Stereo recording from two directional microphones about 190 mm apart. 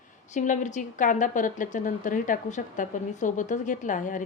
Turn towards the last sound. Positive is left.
turn(degrees=40)  # may be behind; listen again after turning